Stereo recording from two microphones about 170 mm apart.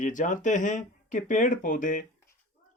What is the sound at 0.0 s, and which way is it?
Speech, 50° left (ahead or behind).